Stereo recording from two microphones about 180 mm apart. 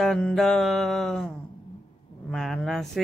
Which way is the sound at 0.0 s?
Centre (ahead or behind).